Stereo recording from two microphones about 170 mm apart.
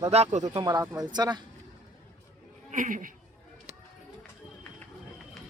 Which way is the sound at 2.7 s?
50° right (ahead or behind).